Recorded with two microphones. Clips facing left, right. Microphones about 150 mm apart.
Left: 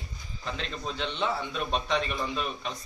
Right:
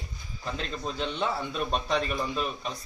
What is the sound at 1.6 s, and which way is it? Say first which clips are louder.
A man's voice: right 1 dB; centre (ahead or behind).